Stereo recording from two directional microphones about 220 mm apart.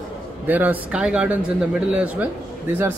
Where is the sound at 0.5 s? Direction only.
10° right (ahead or behind).